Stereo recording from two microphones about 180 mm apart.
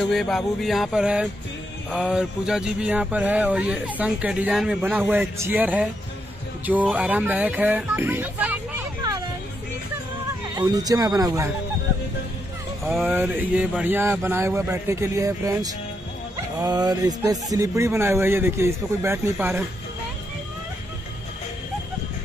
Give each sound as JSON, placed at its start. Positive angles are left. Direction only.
{"t": 0.0, "sound": "music", "side_deg": 0}
{"t": 1.9, "sound": "speech", "side_deg": -5}
{"t": 10.5, "sound": "speech", "side_deg": -20}
{"t": 12.8, "sound": "speech", "side_deg": 0}
{"t": 13.1, "sound": "speech", "side_deg": -10}